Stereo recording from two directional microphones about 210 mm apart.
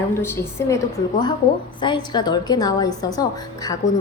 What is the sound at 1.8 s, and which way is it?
A woman's voice, 20° left (ahead or behind).